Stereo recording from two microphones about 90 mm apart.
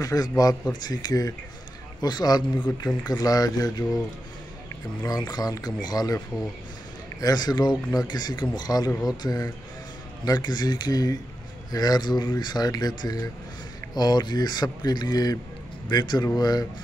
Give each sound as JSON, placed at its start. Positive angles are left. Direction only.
{"t": 0.0, "sound": "speech", "side_deg": 45}
{"t": 5.0, "sound": "speech", "side_deg": 45}